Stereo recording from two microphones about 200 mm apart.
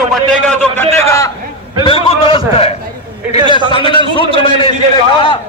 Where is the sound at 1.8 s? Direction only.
25° left (ahead or behind).